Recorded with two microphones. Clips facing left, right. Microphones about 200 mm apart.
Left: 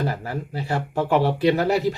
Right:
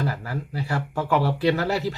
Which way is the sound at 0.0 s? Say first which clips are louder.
Left 2 dB; 25° left (ahead or behind).